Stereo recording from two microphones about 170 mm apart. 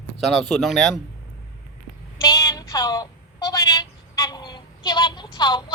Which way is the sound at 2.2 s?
20° left (ahead or behind).